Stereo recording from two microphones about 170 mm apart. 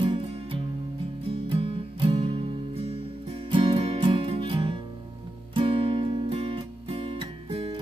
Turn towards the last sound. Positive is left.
turn(degrees=-30)  # may be behind; listen again after turning